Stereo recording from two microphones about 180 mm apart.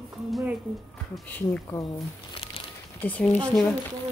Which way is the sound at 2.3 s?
30° left (ahead or behind).